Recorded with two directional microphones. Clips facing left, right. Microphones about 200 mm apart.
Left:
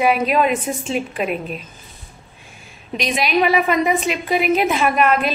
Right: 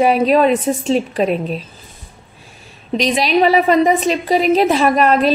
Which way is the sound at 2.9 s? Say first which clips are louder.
Right 4 dB; 35° right (ahead or behind).